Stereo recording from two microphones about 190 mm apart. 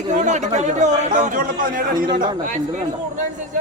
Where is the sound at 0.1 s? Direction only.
40° right (ahead or behind).